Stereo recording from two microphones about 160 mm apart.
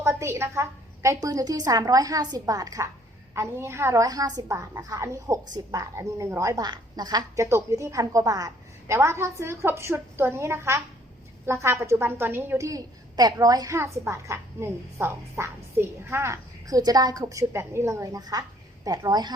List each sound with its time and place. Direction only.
0.0 s a woman's voice: 15° right (ahead or behind)